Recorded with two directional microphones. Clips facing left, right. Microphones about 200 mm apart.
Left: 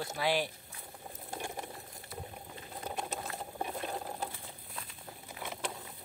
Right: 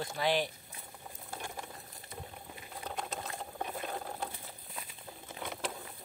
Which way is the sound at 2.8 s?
10° left (ahead or behind).